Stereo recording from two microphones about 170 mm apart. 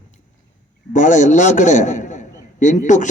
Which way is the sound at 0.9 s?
45° left (ahead or behind).